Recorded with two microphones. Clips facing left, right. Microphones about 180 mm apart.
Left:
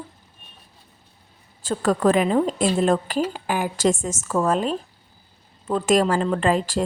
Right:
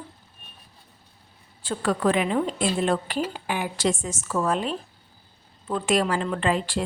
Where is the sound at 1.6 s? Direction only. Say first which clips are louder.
Left 4 dB; 45° left (ahead or behind).